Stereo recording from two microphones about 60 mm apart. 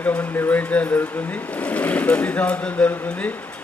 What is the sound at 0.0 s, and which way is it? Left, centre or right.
Speech, left.